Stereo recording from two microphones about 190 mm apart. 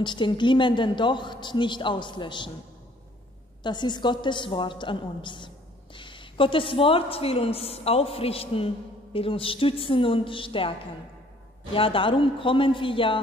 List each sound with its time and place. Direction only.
0.0 s a woman's voice: 25° left (ahead or behind)
3.6 s a woman's voice: 25° left (ahead or behind)
11.7 s a woman's voice: 30° left (ahead or behind)